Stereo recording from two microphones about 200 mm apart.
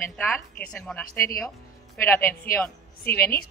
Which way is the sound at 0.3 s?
5° left (ahead or behind).